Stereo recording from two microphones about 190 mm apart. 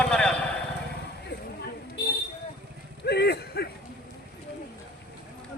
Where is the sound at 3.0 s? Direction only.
60° left (ahead or behind).